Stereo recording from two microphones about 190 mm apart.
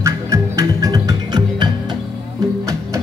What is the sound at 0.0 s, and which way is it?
Music, 15° right (ahead or behind).